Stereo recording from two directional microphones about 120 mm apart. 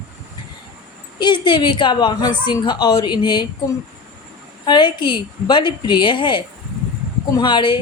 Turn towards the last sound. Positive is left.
turn(degrees=40)  # may be behind; listen again after turning